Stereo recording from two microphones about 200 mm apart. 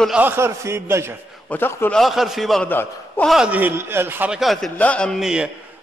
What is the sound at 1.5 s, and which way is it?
Speech, 10° left (ahead or behind).